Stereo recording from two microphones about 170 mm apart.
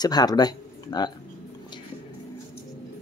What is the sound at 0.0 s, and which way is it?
Speech, 25° left (ahead or behind).